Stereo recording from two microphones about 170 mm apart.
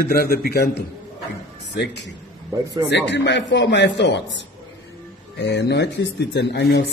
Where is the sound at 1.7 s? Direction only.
90° left.